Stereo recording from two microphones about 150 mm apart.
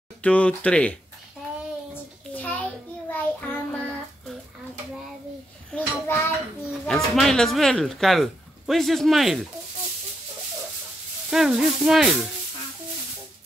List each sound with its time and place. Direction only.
0.2 s speech: 10° left (ahead or behind)
2.3 s child singing: 10° left (ahead or behind)
5.7 s a sound: 10° left (ahead or behind)
6.7 s speech: centre (ahead or behind)
11.2 s speech: 5° right (ahead or behind)